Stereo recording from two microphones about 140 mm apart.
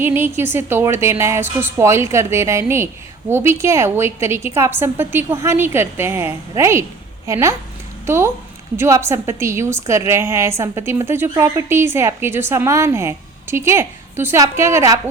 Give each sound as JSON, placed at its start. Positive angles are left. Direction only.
{"t": 0.0, "sound": "a woman's voice", "side_deg": -15}